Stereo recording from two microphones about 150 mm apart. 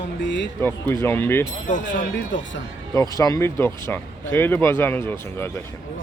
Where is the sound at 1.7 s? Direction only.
55° left (ahead or behind).